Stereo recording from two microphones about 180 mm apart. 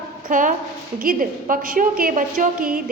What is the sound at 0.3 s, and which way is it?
A woman's voice, 45° right (ahead or behind).